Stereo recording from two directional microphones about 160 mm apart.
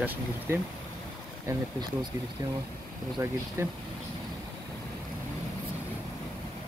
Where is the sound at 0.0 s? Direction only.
10° right (ahead or behind).